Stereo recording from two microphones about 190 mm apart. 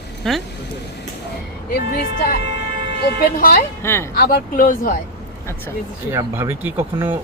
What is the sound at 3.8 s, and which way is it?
Speech, 15° left (ahead or behind).